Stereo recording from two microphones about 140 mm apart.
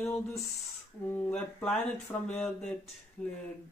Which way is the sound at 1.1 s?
5° left (ahead or behind).